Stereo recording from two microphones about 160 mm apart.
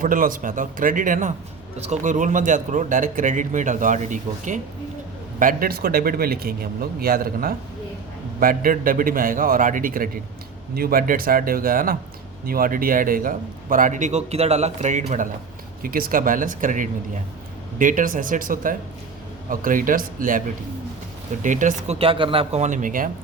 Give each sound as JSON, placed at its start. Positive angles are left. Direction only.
{"t": 0.0, "sound": "a man's voice", "side_deg": -60}
{"t": 15.8, "sound": "a man's voice", "side_deg": -65}
{"t": 21.4, "sound": "a man's voice", "side_deg": -50}
{"t": 21.9, "sound": "speech", "side_deg": -35}